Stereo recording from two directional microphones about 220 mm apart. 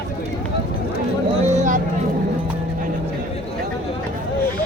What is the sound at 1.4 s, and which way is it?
Vehicle, 35° right (ahead or behind).